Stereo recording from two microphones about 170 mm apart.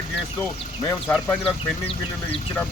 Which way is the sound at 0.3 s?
15° left (ahead or behind).